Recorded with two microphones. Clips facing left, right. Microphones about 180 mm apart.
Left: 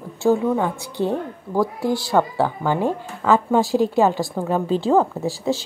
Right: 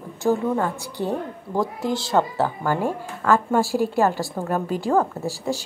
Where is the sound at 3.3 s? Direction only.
20° left (ahead or behind).